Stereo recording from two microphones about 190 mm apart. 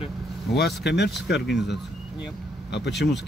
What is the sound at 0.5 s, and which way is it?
Speech, 60° left (ahead or behind).